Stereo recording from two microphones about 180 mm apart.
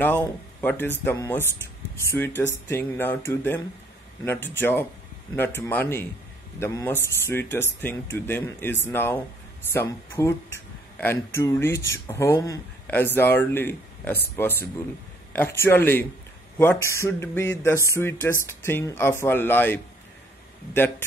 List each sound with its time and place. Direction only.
0.0 s speech: 10° left (ahead or behind)
11.0 s speech: 15° left (ahead or behind)